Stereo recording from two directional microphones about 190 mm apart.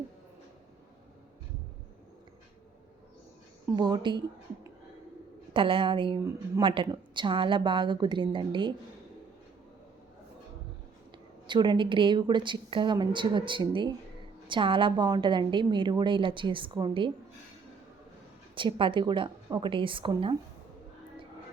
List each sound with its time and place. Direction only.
3.8 s a woman's voice: 20° right (ahead or behind)
5.5 s a woman's voice: 25° right (ahead or behind)
11.4 s a woman's voice: 25° right (ahead or behind)
18.5 s a woman's voice: 25° right (ahead or behind)